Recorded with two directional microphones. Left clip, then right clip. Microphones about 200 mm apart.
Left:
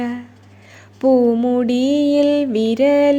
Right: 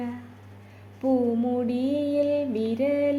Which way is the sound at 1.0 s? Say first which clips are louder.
Left 10 dB; 35° left (ahead or behind).